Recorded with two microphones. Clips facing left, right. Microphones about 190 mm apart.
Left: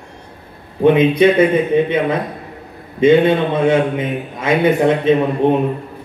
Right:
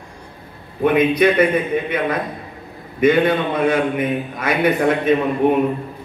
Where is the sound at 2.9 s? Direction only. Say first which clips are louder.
Left 4 dB; 25° left (ahead or behind).